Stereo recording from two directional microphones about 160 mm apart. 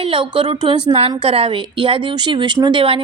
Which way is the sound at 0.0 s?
35° right (ahead or behind).